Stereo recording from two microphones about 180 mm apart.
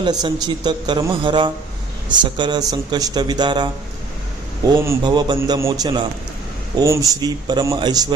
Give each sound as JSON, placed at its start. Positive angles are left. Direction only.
{"t": 0.0, "sound": "a man's voice", "side_deg": -25}